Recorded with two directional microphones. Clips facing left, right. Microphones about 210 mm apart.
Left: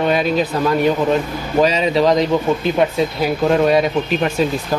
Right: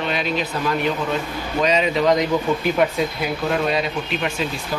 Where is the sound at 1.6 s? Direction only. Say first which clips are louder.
Left 2 dB; 35° left (ahead or behind).